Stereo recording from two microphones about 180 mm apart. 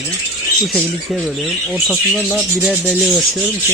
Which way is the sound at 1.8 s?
Centre (ahead or behind).